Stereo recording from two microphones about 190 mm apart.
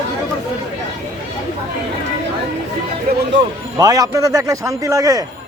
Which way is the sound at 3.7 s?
20° right (ahead or behind).